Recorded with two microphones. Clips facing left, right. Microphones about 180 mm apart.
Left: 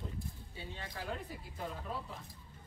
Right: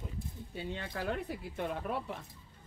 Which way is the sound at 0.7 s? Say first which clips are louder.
Right 6 dB; 65° right (ahead or behind).